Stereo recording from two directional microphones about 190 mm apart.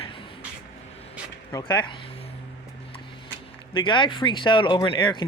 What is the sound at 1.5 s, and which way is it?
Speech, 20° left (ahead or behind).